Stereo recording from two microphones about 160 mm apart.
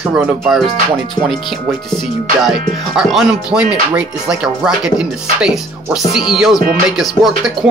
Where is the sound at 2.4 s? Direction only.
Centre (ahead or behind).